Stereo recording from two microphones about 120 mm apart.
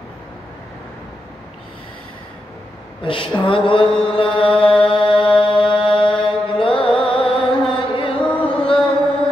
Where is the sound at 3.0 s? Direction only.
45° left (ahead or behind).